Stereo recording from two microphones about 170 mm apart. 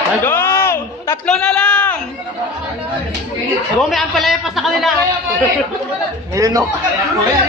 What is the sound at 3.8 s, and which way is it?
A man's voice, centre (ahead or behind).